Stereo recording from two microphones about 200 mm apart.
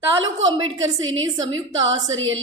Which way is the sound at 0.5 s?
20° right (ahead or behind).